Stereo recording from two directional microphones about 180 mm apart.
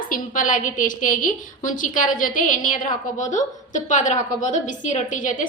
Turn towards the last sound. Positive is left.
turn(degrees=45)  # may be behind; listen again after turning